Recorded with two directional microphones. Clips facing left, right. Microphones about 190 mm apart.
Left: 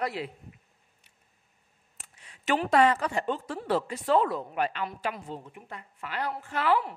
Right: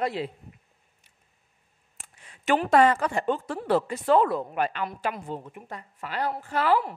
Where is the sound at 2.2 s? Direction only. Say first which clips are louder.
Right 3 dB; 50° right (ahead or behind); by 6.8 s 35° right (ahead or behind).